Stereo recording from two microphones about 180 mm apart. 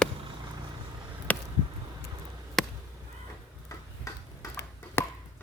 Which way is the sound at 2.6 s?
Centre (ahead or behind).